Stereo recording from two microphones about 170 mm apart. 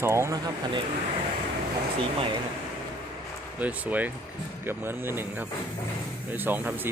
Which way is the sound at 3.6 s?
10° right (ahead or behind).